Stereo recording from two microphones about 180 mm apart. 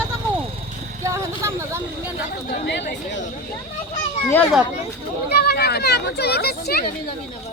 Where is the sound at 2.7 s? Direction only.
75° left (ahead or behind).